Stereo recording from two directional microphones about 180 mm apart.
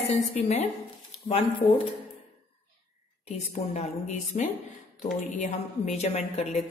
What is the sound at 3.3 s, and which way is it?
A woman's voice, 40° left (ahead or behind).